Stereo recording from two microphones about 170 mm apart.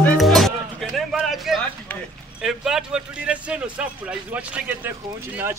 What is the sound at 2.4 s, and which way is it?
A man's voice, 5° right (ahead or behind).